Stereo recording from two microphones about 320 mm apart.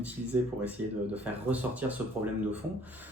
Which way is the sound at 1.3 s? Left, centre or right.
Centre.